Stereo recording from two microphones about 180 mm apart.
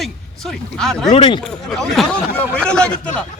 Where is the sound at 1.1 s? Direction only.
30° left (ahead or behind).